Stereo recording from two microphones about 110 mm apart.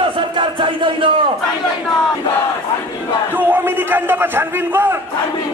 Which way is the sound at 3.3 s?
15° right (ahead or behind).